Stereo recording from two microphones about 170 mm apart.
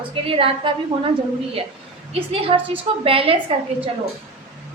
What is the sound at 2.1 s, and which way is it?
A woman's voice, 35° right (ahead or behind).